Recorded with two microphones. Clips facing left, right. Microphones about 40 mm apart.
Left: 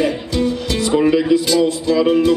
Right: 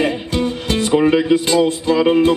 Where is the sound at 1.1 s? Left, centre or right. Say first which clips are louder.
Even; right.